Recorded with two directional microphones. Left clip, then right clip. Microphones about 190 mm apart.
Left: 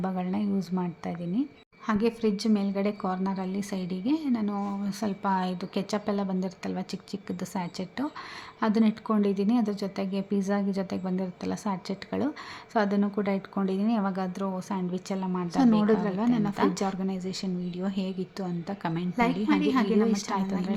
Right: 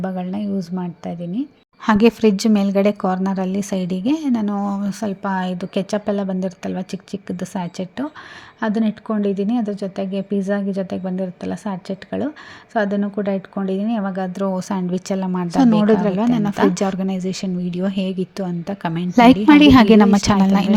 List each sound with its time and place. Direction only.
0.0 s a woman's voice: 15° right (ahead or behind)
1.9 s a woman's voice: 40° right (ahead or behind)
19.5 s a woman's voice: 50° right (ahead or behind)